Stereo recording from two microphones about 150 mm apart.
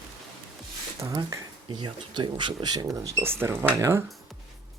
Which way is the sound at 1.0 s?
30° right (ahead or behind).